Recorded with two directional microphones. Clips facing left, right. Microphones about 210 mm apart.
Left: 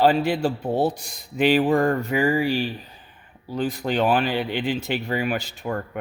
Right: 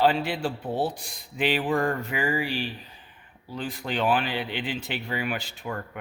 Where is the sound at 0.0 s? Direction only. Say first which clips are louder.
Left 5 dB; 40° left (ahead or behind).